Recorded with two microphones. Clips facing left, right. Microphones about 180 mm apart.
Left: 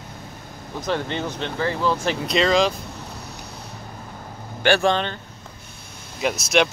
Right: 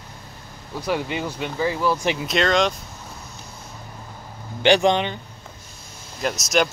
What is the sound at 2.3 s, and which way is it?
Speech, centre (ahead or behind).